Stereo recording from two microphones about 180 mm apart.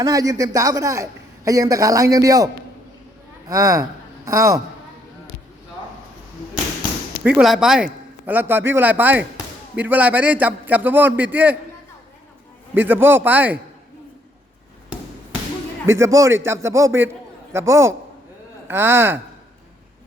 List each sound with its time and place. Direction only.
0.0 s a man's voice: 20° right (ahead or behind)
3.5 s a man's voice: 20° right (ahead or behind)
7.3 s a man's voice: 5° right (ahead or behind)
12.7 s a man's voice: 10° right (ahead or behind)
15.9 s a man's voice: 15° right (ahead or behind)